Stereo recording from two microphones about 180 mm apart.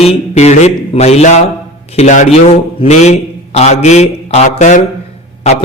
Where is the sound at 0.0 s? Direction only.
35° left (ahead or behind).